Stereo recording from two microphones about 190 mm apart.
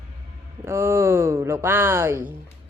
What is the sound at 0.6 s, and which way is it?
Speech, 15° right (ahead or behind).